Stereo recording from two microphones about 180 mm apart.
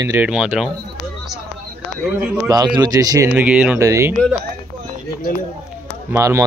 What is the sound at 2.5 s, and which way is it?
Speech, 20° right (ahead or behind).